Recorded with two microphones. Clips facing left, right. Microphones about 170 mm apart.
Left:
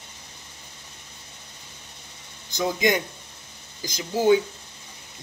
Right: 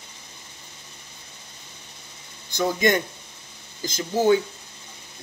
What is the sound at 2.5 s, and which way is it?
Speech, 15° left (ahead or behind).